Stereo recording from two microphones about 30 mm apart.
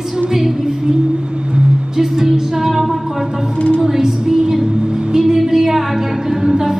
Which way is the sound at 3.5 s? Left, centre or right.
Left.